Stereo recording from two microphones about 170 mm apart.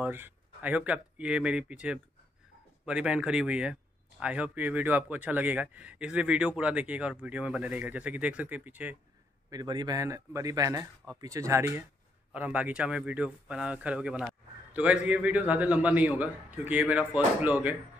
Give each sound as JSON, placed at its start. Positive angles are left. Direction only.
{"t": 0.0, "sound": "speech", "side_deg": -10}
{"t": 9.5, "sound": "a man's voice", "side_deg": -25}